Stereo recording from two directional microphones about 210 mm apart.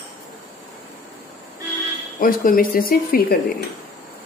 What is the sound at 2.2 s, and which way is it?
Speech, 45° left (ahead or behind).